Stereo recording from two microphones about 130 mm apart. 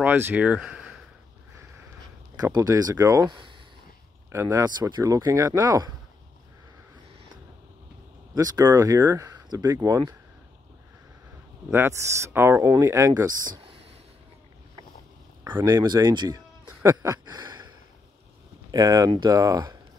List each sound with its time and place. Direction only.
0.0 s speech: 15° right (ahead or behind)
2.4 s speech: 30° right (ahead or behind)
4.6 s speech: 35° right (ahead or behind)
8.7 s speech: 20° right (ahead or behind)
9.5 s speech: 30° right (ahead or behind)
11.7 s speech: 20° right (ahead or behind)
15.6 s speech: 30° right (ahead or behind)
16.8 s a sound: 25° right (ahead or behind)
18.7 s speech: 30° right (ahead or behind)